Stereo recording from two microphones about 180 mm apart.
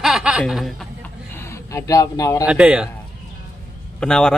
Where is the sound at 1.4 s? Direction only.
15° left (ahead or behind).